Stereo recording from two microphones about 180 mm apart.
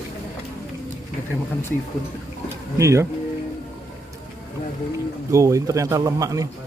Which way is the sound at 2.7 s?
15° right (ahead or behind).